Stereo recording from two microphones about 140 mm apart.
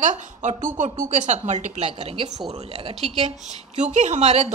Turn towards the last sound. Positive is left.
turn(degrees=-50)  # may be behind; listen again after turning